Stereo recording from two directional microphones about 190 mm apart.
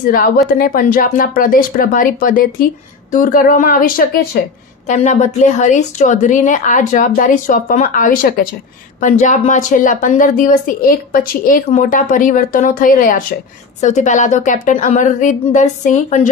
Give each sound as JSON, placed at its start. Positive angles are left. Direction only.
{"t": 0.6, "sound": "speech", "side_deg": 45}
{"t": 4.9, "sound": "speech", "side_deg": 40}